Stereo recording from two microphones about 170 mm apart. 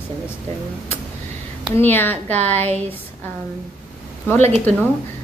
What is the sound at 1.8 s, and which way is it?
Speech, 10° left (ahead or behind).